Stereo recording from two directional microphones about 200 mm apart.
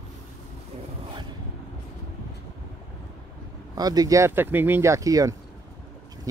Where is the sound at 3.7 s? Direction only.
20° right (ahead or behind).